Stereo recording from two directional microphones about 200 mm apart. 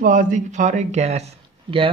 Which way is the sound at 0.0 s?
40° right (ahead or behind).